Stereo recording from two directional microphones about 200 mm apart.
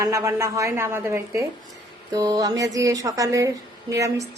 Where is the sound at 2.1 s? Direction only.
20° right (ahead or behind).